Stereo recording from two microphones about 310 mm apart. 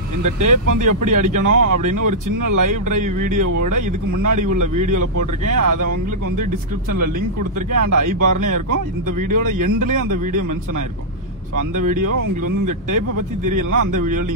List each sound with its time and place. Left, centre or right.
0.2 s speech: right
7.7 s speech: right
12.2 s speech: right